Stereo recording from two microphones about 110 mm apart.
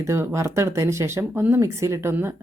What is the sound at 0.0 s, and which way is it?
Speech, 25° right (ahead or behind).